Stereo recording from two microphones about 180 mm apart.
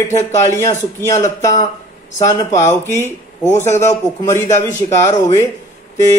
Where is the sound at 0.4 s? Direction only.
15° left (ahead or behind).